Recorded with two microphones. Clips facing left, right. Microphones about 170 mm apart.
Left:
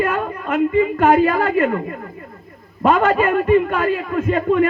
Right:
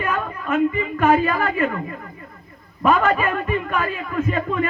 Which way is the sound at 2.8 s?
30° left (ahead or behind).